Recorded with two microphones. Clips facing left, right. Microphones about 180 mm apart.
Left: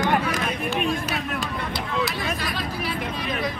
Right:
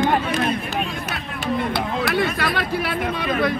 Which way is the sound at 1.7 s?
65° right (ahead or behind).